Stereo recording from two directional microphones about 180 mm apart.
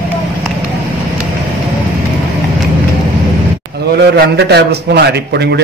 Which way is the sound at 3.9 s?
65° right (ahead or behind).